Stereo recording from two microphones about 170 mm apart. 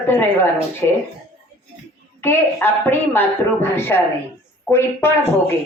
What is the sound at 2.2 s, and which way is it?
Speech, 10° left (ahead or behind).